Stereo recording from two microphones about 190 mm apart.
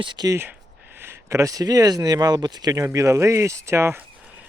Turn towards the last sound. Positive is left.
turn(degrees=-15)  # may be behind; listen again after turning